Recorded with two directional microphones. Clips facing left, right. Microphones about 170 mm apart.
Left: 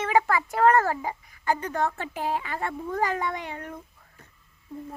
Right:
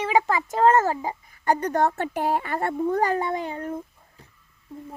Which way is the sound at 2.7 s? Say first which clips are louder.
Right 5 dB; 35° right (ahead or behind).